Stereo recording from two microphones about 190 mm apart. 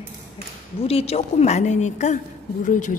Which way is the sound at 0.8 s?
30° left (ahead or behind).